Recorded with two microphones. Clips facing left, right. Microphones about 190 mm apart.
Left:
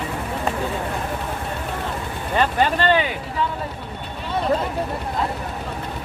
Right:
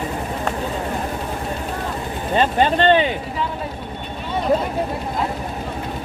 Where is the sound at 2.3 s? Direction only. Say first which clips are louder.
Right 3 dB; 20° right (ahead or behind).